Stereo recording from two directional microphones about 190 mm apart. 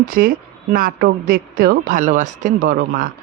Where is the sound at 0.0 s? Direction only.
50° right (ahead or behind).